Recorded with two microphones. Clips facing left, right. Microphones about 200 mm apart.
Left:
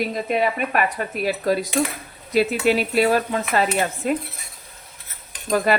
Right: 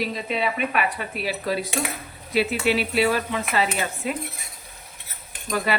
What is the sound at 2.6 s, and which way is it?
A woman's voice, 45° left (ahead or behind).